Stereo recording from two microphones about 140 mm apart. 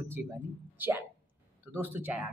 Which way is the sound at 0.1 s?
15° right (ahead or behind).